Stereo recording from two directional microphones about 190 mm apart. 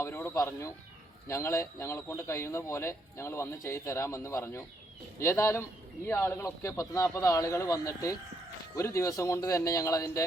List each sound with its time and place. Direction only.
0.0 s speech: 15° left (ahead or behind)